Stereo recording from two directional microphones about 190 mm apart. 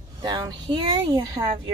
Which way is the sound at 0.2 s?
25° right (ahead or behind).